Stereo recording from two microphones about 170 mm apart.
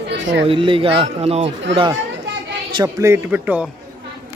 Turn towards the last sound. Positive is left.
turn(degrees=-10)  # may be behind; listen again after turning